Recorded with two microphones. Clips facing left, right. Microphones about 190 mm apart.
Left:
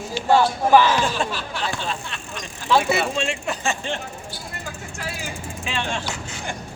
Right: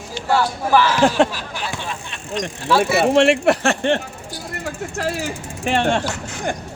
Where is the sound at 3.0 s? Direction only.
75° right (ahead or behind).